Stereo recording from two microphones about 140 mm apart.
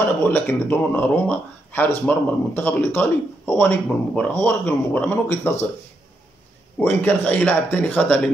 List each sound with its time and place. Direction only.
0.2 s speech: 15° left (ahead or behind)
6.8 s speech: 15° left (ahead or behind)